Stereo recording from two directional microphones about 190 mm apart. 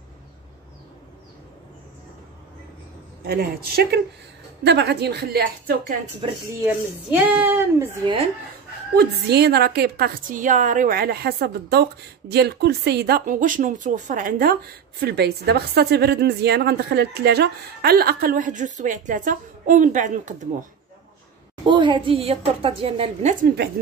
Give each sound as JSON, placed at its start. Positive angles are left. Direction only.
{"t": 3.3, "sound": "speech", "side_deg": -55}
{"t": 6.6, "sound": "speech", "side_deg": -5}
{"t": 8.9, "sound": "speech", "side_deg": -60}
{"t": 21.6, "sound": "speech", "side_deg": -25}
{"t": 23.4, "sound": "speech", "side_deg": -55}